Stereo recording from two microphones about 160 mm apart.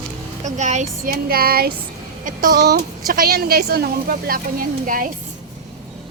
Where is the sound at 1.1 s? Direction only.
70° right (ahead or behind).